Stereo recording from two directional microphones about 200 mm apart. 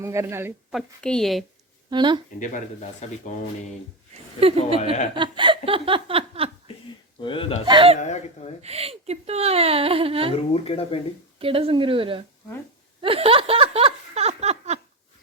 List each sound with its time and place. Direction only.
0.0 s speech: 15° right (ahead or behind)
0.7 s a woman's voice: centre (ahead or behind)
1.9 s speech: 20° right (ahead or behind)
2.4 s speech: 40° left (ahead or behind)
4.4 s speech: 30° right (ahead or behind)
7.2 s speech: 25° left (ahead or behind)
7.6 s speech: 25° right (ahead or behind)
10.5 s speech: 30° left (ahead or behind)
11.3 s speech: 30° right (ahead or behind)
13.0 s a sound: 30° right (ahead or behind)